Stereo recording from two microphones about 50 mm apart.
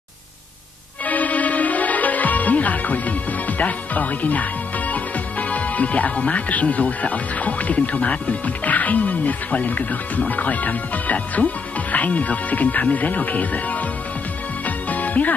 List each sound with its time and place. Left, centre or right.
1.0 s music: left
14.9 s music: left